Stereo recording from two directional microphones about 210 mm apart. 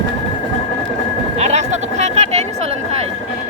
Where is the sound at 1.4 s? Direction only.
30° right (ahead or behind).